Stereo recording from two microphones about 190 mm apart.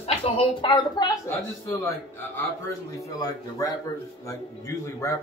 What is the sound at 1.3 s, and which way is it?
Speech, 10° left (ahead or behind).